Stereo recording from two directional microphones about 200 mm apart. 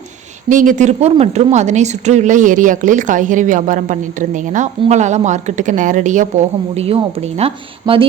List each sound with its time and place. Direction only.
0.4 s speech: 40° right (ahead or behind)